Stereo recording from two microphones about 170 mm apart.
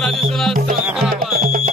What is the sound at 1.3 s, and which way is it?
Music, 55° right (ahead or behind).